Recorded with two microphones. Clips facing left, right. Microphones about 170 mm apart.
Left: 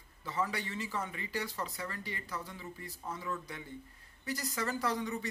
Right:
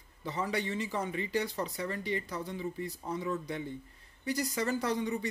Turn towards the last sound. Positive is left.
turn(degrees=-15)  # may be behind; listen again after turning